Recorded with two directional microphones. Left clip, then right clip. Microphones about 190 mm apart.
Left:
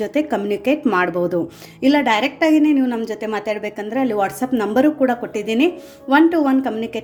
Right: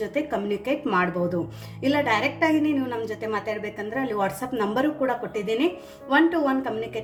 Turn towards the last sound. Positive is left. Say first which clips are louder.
# left 6 dB
turn(degrees=45)  # may be behind; listen again after turning